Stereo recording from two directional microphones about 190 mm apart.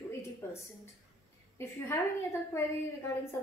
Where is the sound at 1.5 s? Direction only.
15° left (ahead or behind).